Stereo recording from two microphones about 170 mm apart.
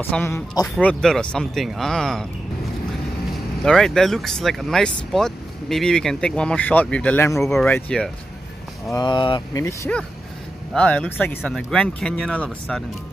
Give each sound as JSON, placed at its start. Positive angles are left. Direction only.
{"t": 0.1, "sound": "speech", "side_deg": 15}
{"t": 3.6, "sound": "speech", "side_deg": 5}
{"t": 8.9, "sound": "speech", "side_deg": 25}
{"t": 10.7, "sound": "speech", "side_deg": 10}